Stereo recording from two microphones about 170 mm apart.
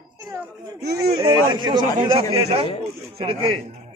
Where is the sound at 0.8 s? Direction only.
70° right (ahead or behind).